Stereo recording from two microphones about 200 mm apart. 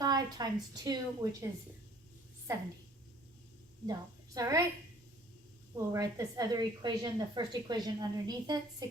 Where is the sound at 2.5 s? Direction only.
15° right (ahead or behind).